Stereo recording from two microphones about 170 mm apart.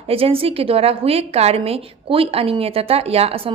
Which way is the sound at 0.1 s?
35° right (ahead or behind).